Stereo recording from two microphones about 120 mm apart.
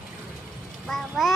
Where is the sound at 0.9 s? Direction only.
Centre (ahead or behind).